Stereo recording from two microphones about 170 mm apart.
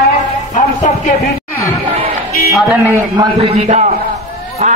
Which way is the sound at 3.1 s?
30° right (ahead or behind).